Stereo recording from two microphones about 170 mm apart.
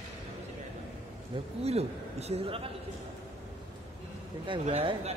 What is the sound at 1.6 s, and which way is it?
A man's voice, 40° right (ahead or behind).